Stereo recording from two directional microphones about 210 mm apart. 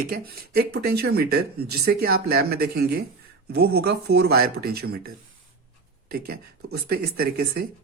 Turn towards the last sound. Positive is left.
turn(degrees=-45)  # may be behind; listen again after turning